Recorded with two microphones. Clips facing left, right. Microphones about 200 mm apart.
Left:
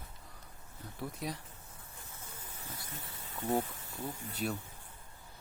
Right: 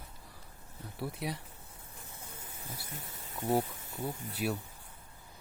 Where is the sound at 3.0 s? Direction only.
10° right (ahead or behind).